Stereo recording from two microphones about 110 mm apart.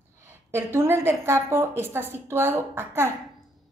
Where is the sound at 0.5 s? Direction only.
20° right (ahead or behind).